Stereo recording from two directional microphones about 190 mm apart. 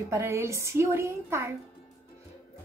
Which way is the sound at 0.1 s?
15° right (ahead or behind).